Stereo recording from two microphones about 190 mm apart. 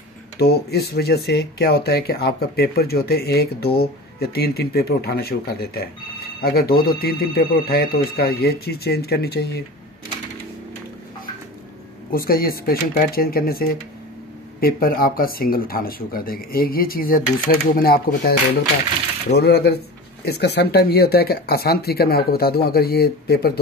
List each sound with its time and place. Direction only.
0.4 s speech: 55° left (ahead or behind)
12.1 s speech: 50° left (ahead or behind)
19.3 s speech: 60° left (ahead or behind)